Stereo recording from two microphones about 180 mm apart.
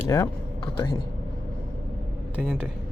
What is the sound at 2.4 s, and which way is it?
Speech, 10° right (ahead or behind).